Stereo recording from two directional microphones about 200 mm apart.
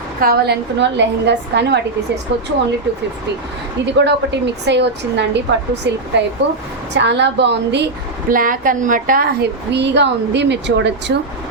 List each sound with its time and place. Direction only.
0.2 s a woman's voice: 50° right (ahead or behind)
3.8 s a woman's voice: 60° right (ahead or behind)
8.3 s a woman's voice: 45° right (ahead or behind); by 11.2 s 60° right (ahead or behind)